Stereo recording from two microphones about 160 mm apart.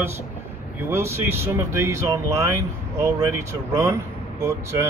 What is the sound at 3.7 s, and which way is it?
A man's voice, 20° right (ahead or behind).